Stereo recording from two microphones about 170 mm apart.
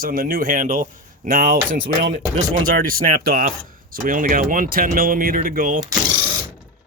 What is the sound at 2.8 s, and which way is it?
Speech, 55° right (ahead or behind).